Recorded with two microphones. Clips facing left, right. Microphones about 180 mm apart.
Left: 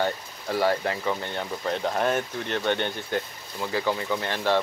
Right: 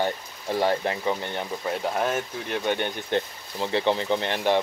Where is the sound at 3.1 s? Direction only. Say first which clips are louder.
Right 3 dB; 25° right (ahead or behind).